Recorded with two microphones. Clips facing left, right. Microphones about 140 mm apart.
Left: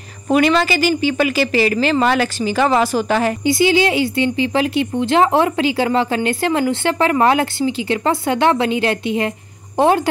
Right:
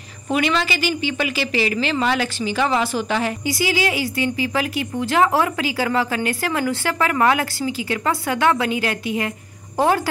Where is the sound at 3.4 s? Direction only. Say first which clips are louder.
Left 9 dB; 25° left (ahead or behind).